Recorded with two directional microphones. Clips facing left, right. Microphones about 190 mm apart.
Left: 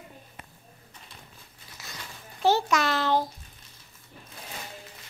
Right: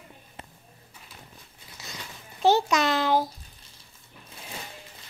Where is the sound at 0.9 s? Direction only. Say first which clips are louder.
Even; 5° right (ahead or behind).